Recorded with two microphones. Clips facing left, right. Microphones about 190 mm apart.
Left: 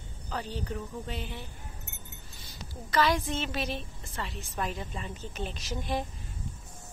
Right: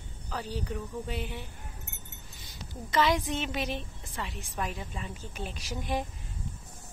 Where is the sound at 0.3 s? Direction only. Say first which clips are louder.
Even; 5° right (ahead or behind).